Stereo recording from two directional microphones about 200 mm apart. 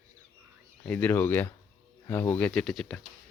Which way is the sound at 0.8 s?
5° left (ahead or behind).